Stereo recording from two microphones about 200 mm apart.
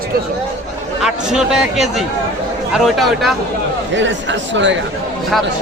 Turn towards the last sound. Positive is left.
turn(degrees=-65)  # may be behind; listen again after turning